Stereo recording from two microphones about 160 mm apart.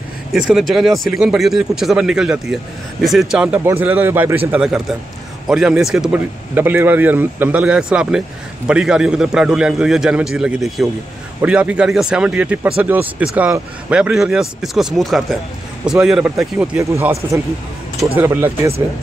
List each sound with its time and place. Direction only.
0.3 s speech: centre (ahead or behind)